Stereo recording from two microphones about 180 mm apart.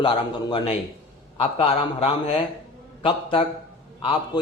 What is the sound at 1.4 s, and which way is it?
A man's voice, 30° left (ahead or behind).